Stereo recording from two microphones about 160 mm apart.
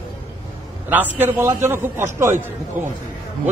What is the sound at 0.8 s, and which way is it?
A man's voice, 10° right (ahead or behind).